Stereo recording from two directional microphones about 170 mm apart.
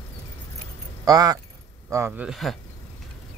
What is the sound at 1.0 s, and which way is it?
Speech, 20° right (ahead or behind).